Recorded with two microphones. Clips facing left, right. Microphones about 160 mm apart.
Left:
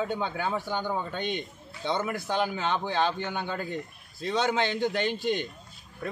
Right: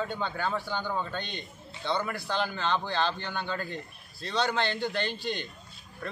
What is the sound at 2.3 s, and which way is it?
A man's voice, 10° left (ahead or behind).